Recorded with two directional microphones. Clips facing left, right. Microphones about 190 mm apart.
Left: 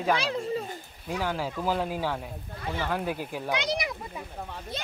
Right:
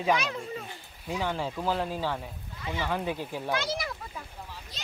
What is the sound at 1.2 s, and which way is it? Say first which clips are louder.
Speech: left 1 dB; 5° left (ahead or behind).